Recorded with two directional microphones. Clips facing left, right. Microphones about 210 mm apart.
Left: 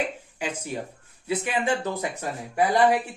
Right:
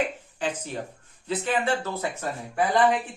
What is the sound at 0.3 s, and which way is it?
Speech, 10° left (ahead or behind).